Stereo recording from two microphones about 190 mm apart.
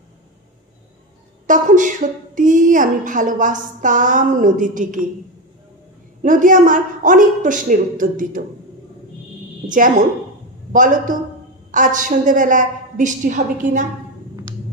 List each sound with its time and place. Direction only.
1.5 s a woman's voice: 40° right (ahead or behind)
6.2 s a woman's voice: 45° right (ahead or behind)
9.7 s a woman's voice: 45° right (ahead or behind)